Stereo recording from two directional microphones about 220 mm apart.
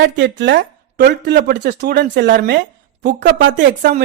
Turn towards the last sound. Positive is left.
turn(degrees=-40)  # may be behind; listen again after turning